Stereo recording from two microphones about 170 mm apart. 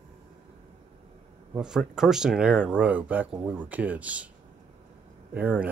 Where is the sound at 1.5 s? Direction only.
5° right (ahead or behind).